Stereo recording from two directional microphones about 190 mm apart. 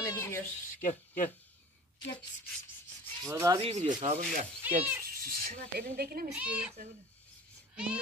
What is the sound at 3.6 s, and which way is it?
Rub, 35° right (ahead or behind).